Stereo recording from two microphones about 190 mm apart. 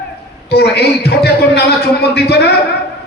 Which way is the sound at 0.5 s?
60° left (ahead or behind).